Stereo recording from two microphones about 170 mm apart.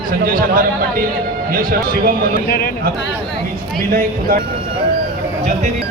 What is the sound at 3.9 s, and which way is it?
Speech, 55° right (ahead or behind).